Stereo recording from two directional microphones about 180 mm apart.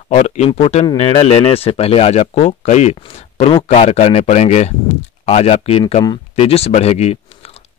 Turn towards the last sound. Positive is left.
turn(degrees=35)  # may be behind; listen again after turning